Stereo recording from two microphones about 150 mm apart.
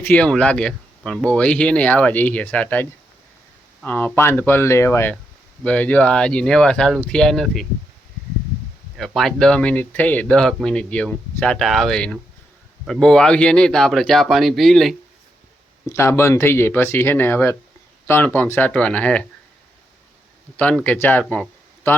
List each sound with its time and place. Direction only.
0.0 s speech: 10° left (ahead or behind)
3.8 s speech: 10° left (ahead or behind)
9.0 s speech: centre (ahead or behind)
15.9 s speech: 20° left (ahead or behind)
20.6 s speech: 10° left (ahead or behind)